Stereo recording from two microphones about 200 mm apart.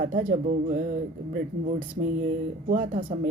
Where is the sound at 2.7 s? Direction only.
40° right (ahead or behind).